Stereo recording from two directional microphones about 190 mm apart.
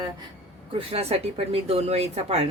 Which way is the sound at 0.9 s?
30° right (ahead or behind).